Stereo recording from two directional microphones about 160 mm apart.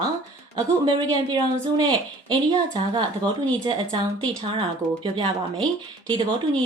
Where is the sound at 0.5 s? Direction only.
25° right (ahead or behind).